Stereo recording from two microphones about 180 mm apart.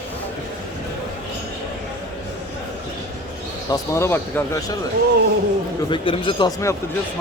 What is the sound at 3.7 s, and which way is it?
Speech, 15° left (ahead or behind).